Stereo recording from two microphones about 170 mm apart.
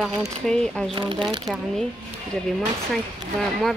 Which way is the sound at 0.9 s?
30° right (ahead or behind).